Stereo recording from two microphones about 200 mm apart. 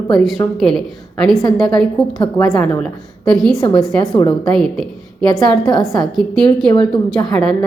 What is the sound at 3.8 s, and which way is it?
A woman's voice, 5° left (ahead or behind).